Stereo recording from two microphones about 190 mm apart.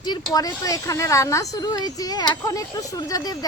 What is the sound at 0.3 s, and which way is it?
A woman's voice, 20° left (ahead or behind).